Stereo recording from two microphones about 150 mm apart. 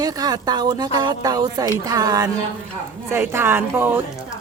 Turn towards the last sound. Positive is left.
turn(degrees=-15)  # may be behind; listen again after turning